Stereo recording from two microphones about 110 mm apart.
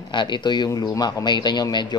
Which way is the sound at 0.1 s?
45° left (ahead or behind).